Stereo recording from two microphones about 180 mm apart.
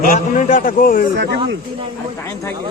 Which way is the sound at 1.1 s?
75° right (ahead or behind).